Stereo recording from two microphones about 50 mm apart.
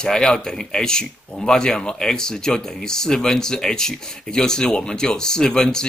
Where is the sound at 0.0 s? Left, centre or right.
Centre.